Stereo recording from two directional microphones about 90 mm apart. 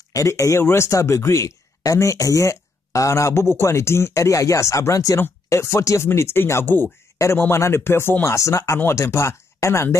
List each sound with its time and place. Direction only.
0.1 s speech: 35° left (ahead or behind)